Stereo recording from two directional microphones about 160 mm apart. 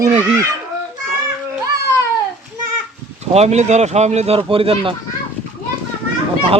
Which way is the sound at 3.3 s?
45° right (ahead or behind).